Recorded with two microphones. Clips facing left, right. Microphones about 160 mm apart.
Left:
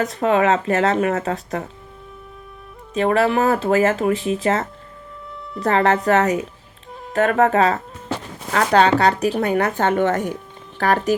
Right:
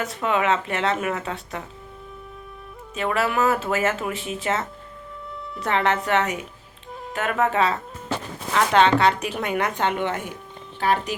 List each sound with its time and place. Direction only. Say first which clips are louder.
0.0 s speech: left 6 dB; 35° left (ahead or behind)
2.9 s speech: left 6 dB; 35° left (ahead or behind)